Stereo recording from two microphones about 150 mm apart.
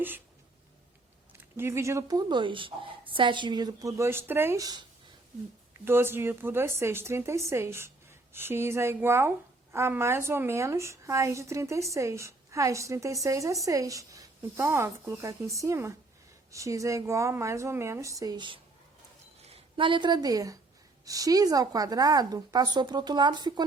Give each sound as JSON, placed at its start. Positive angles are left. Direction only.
{"t": 1.3, "sound": "a woman's voice", "side_deg": -15}
{"t": 5.8, "sound": "a woman's voice", "side_deg": -15}